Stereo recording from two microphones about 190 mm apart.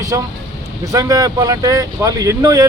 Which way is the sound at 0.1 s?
15° right (ahead or behind).